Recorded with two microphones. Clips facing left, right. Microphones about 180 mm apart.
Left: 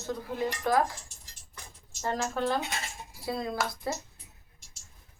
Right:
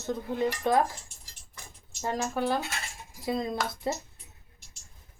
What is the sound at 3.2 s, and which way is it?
Speech, 20° right (ahead or behind).